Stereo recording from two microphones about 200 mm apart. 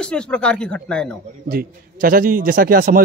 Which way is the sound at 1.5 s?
45° right (ahead or behind).